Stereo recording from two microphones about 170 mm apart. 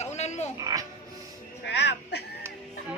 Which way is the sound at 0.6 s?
20° right (ahead or behind).